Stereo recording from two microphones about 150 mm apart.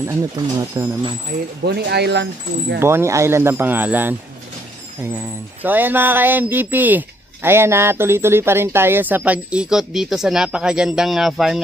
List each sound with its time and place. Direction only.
0.1 s speech: 20° right (ahead or behind)
1.6 s speech: 90° right
2.8 s speech: 15° right (ahead or behind)
5.6 s speech: 10° right (ahead or behind)